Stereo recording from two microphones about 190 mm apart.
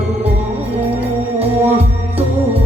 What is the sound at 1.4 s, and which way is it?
Music, 30° right (ahead or behind).